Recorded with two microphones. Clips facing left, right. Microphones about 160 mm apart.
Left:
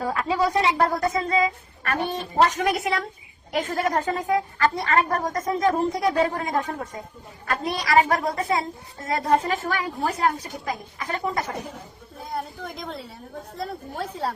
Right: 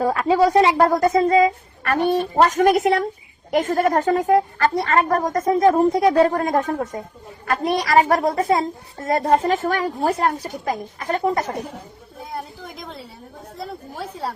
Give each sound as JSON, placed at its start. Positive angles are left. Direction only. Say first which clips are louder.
{"t": 0.0, "sound": "a woman's voice", "louder": "right 7 dB", "side_deg": -45}
{"t": 5.7, "sound": "a woman's voice", "louder": "right 7 dB", "side_deg": -50}
{"t": 12.3, "sound": "a woman's voice", "louder": "left 1 dB", "side_deg": 0}